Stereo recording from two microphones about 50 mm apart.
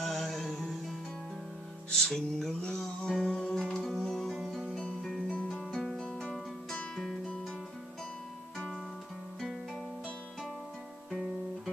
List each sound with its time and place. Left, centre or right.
0.0 s music: centre
3.3 s music: centre
3.5 s music: centre
4.4 s music: centre
5.3 s music: left
11.1 s guitar: centre